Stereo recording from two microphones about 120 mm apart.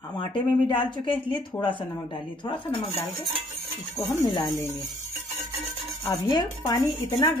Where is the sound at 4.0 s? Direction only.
25° left (ahead or behind).